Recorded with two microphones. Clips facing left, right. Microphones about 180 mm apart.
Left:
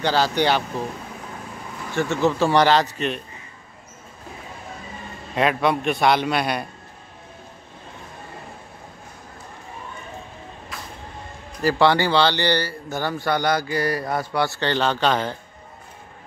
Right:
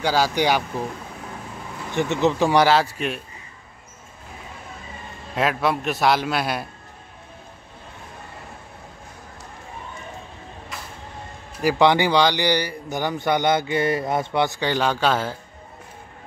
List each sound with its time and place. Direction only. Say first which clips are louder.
0.0 s speech: even; 10° right (ahead or behind)
1.9 s speech: even; 20° right (ahead or behind)
5.3 s a man's voice: left 2 dB; centre (ahead or behind)
10.7 s vehicle: even; centre (ahead or behind)
11.6 s speech: right 1 dB; 15° right (ahead or behind)